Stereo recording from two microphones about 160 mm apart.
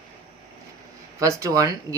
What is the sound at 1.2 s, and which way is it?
Speech, 20° right (ahead or behind).